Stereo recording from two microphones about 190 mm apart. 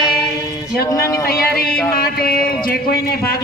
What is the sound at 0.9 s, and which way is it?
Speech, 15° left (ahead or behind).